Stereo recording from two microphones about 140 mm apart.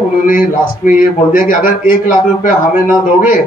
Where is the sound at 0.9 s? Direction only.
75° left (ahead or behind).